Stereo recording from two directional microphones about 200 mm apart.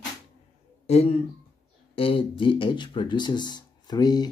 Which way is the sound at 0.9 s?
30° left (ahead or behind).